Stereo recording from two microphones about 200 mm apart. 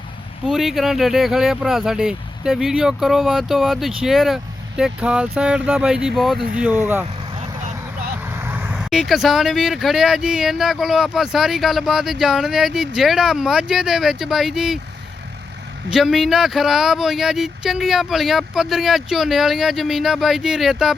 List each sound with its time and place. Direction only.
0.4 s speech: centre (ahead or behind)
8.4 s speech: 10° right (ahead or behind)
15.9 s speech: centre (ahead or behind)